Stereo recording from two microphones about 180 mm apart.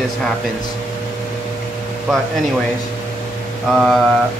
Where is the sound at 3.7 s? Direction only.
Centre (ahead or behind).